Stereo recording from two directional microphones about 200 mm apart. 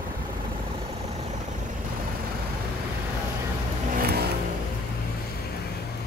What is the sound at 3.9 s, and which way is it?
Vehicle, 50° right (ahead or behind).